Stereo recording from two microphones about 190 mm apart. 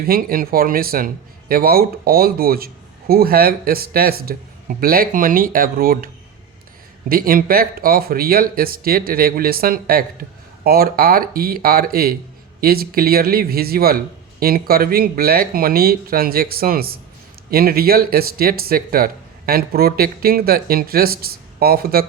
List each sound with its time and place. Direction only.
0.0 s speech: 50° right (ahead or behind)
7.1 s speech: 50° right (ahead or behind)